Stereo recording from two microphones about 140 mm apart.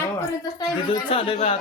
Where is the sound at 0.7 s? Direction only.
35° left (ahead or behind).